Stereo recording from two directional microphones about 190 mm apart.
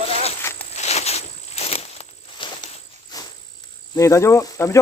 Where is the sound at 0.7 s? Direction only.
35° left (ahead or behind).